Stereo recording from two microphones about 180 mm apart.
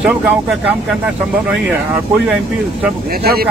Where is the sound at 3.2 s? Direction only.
55° right (ahead or behind).